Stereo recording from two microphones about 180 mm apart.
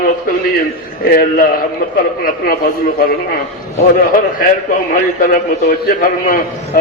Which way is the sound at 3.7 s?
50° left (ahead or behind).